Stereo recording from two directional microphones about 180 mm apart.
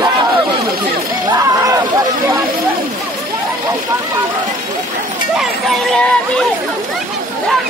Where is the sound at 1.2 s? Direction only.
20° right (ahead or behind).